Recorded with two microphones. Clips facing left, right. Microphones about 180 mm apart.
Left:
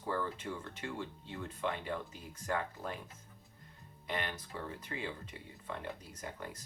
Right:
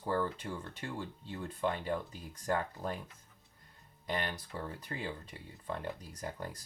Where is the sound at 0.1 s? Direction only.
35° right (ahead or behind).